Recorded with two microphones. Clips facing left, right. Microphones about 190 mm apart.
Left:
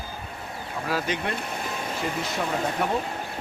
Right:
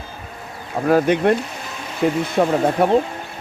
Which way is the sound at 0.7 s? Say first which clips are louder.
Right 12 dB; 55° right (ahead or behind).